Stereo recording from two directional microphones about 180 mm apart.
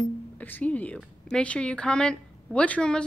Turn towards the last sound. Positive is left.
turn(degrees=5)  # may be behind; listen again after turning